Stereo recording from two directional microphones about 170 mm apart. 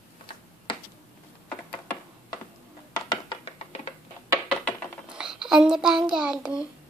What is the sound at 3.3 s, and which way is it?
Music, 35° left (ahead or behind).